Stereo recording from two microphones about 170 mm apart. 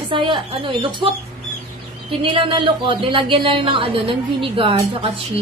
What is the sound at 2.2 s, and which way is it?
A woman's voice, 30° right (ahead or behind).